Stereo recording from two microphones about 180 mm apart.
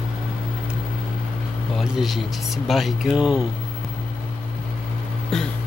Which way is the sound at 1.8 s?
Centre (ahead or behind).